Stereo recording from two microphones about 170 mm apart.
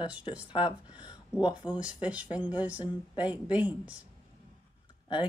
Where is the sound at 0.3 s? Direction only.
35° left (ahead or behind).